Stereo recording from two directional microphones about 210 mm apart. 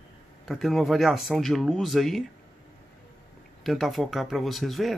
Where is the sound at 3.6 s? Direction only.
Centre (ahead or behind).